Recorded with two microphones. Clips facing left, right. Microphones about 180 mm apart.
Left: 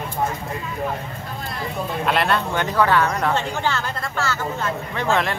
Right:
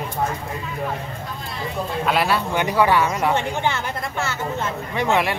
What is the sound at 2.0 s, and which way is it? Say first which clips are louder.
Speech: even; 5° right (ahead or behind).